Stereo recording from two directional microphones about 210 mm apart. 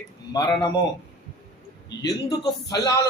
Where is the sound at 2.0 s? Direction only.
15° left (ahead or behind).